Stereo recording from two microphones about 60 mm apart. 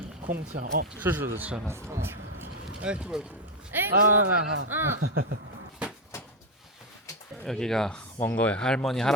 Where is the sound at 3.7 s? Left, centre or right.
Right.